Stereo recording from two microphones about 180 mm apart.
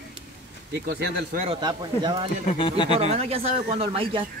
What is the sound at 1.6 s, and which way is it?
Speech, 25° right (ahead or behind).